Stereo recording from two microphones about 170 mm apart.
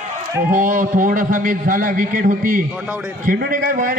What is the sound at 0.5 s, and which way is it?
A man's voice, 50° right (ahead or behind).